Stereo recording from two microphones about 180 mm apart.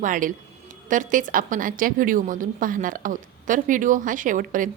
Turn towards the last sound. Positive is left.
turn(degrees=-45)  # may be behind; listen again after turning